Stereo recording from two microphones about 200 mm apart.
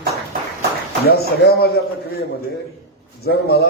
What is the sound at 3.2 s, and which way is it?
Speech, 50° left (ahead or behind).